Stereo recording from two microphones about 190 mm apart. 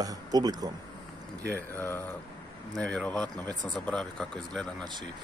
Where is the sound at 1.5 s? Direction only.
10° left (ahead or behind).